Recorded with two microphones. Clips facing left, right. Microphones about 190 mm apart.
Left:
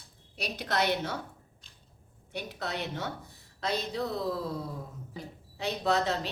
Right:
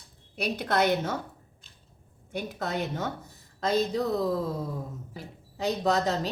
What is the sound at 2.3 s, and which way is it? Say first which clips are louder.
A woman's voice: right 4 dB; 45° right (ahead or behind).